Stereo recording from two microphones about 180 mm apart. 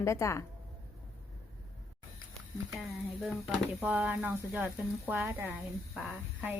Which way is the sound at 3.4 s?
5° right (ahead or behind).